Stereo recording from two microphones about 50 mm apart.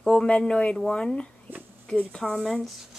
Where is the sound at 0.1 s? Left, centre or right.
Centre.